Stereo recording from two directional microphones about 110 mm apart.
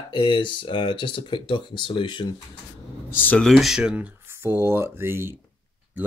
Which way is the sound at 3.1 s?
15° left (ahead or behind).